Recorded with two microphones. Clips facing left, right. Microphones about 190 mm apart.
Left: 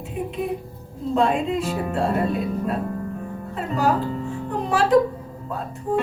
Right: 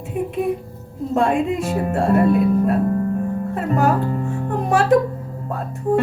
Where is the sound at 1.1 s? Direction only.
50° right (ahead or behind).